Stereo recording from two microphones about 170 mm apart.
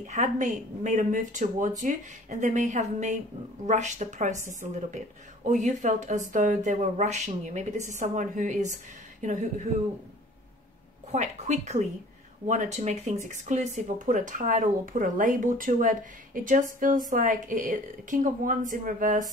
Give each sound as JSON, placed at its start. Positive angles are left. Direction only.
{"t": 0.0, "sound": "speech", "side_deg": -45}
{"t": 11.1, "sound": "a woman's voice", "side_deg": -40}